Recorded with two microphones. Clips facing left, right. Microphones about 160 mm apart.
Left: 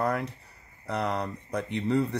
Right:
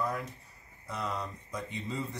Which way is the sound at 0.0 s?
70° left (ahead or behind).